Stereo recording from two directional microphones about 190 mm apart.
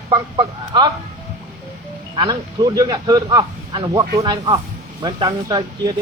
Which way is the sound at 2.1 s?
25° right (ahead or behind).